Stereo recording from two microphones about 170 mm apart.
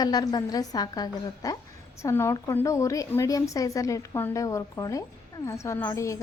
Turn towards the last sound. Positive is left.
turn(degrees=20)  # may be behind; listen again after turning